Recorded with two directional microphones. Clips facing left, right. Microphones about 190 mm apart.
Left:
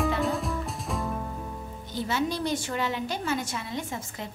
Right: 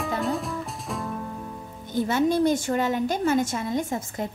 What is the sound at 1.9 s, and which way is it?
A woman's voice, 50° right (ahead or behind).